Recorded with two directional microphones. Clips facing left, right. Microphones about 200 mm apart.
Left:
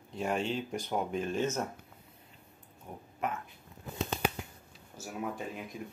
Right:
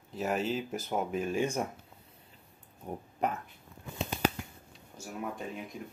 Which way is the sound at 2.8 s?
40° right (ahead or behind).